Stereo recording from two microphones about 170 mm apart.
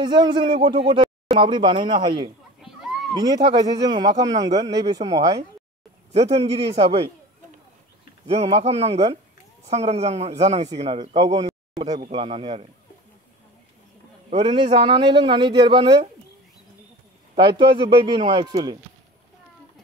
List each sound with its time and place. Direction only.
0.0 s a man's voice: 25° right (ahead or behind)
6.1 s speech: 40° right (ahead or behind)
8.3 s speech: 35° right (ahead or behind)
14.3 s a man's voice: 35° right (ahead or behind)
17.4 s a man's voice: 30° right (ahead or behind)